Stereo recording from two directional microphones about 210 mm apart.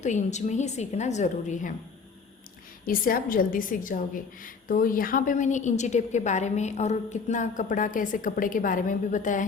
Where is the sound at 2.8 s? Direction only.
40° left (ahead or behind).